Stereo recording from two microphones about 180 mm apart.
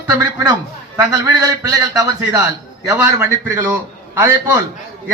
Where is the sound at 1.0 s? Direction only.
20° right (ahead or behind).